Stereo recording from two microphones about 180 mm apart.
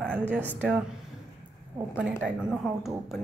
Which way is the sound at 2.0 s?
5° right (ahead or behind).